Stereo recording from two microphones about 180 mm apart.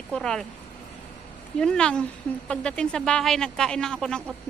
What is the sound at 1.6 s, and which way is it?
Speech, 5° left (ahead or behind).